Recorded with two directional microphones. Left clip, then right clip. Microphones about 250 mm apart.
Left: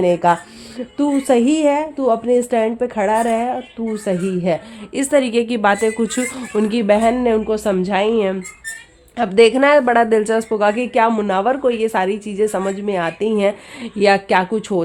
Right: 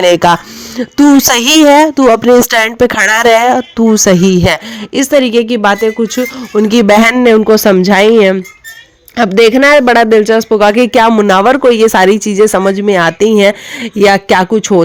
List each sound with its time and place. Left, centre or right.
0.0 s a woman's voice: right